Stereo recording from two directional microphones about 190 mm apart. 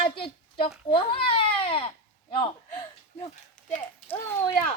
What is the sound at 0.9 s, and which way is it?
Baby cry, 30° left (ahead or behind).